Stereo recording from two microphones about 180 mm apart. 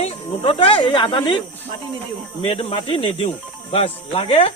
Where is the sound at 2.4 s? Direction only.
35° left (ahead or behind).